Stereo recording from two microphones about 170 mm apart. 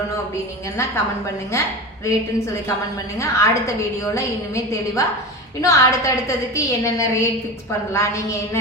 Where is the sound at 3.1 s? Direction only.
15° left (ahead or behind).